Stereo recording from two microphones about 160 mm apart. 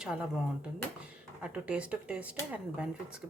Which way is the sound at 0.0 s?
5° right (ahead or behind).